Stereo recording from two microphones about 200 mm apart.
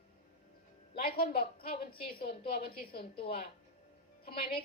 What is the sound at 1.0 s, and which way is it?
A woman's voice, 50° left (ahead or behind).